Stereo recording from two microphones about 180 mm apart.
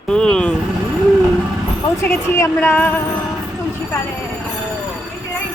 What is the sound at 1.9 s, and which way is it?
A woman's voice, 15° left (ahead or behind).